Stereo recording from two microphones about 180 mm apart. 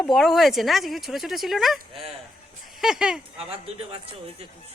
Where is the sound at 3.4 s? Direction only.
30° right (ahead or behind).